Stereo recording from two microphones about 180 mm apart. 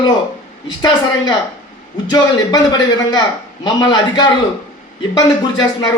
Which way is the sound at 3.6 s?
25° left (ahead or behind).